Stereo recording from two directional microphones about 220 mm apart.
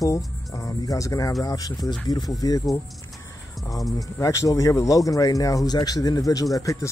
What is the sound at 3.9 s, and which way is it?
Speech, 15° left (ahead or behind).